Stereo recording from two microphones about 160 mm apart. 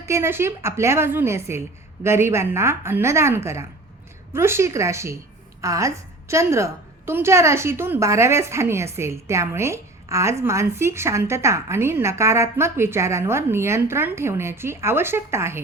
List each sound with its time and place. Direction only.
0.0 s a woman's voice: 15° right (ahead or behind)